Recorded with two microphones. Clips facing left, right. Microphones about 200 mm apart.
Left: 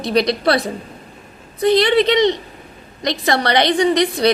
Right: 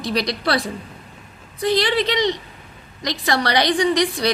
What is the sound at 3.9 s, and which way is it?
Speech, 25° left (ahead or behind).